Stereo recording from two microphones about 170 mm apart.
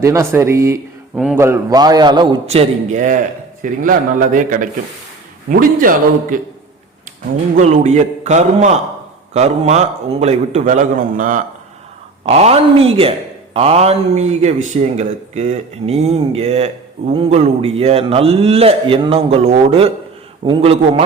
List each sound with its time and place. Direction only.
0.0 s speech: 15° right (ahead or behind)
1.1 s a sound: 5° right (ahead or behind)
1.4 s a man's voice: 15° right (ahead or behind); by 6.5 s 55° right (ahead or behind)
7.5 s a man's voice: 45° right (ahead or behind)
12.2 s speech: 40° right (ahead or behind)